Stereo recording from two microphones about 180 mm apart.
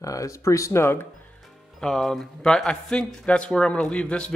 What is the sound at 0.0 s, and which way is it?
Speech, 20° left (ahead or behind).